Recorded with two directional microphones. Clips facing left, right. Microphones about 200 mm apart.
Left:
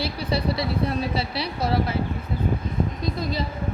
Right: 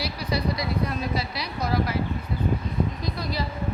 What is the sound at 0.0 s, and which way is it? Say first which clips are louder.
A woman's voice: left 2 dB; 30° left (ahead or behind).